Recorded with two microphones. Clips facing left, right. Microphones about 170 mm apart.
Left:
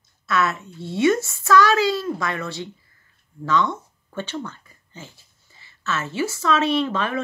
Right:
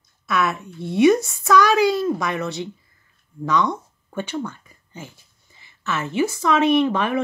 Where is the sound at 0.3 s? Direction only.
15° right (ahead or behind).